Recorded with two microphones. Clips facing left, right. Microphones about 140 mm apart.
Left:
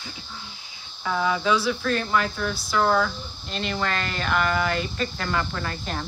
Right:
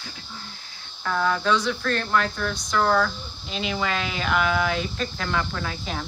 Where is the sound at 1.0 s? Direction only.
5° left (ahead or behind).